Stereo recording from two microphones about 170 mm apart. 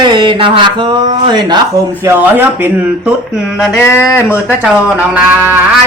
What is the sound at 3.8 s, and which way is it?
Speech, 15° left (ahead or behind).